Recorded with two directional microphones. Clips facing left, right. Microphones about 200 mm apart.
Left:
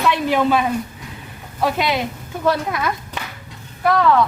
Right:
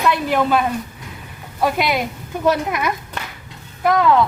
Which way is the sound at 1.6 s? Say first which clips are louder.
Right 1 dB; 10° right (ahead or behind).